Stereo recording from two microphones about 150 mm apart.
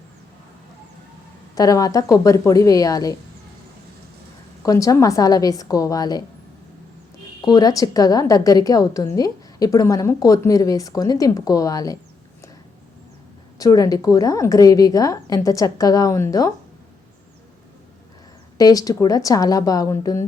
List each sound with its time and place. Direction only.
1.5 s a woman's voice: 25° left (ahead or behind)
4.6 s a woman's voice: 20° left (ahead or behind)
7.4 s a woman's voice: 25° left (ahead or behind)
13.6 s a woman's voice: 20° left (ahead or behind)
18.5 s a woman's voice: 25° left (ahead or behind)